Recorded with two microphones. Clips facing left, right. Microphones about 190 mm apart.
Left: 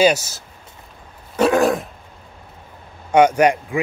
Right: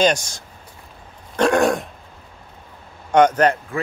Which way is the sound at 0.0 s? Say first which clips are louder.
Left 2 dB; 5° left (ahead or behind).